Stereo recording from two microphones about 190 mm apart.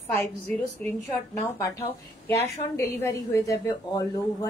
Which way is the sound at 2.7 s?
15° left (ahead or behind).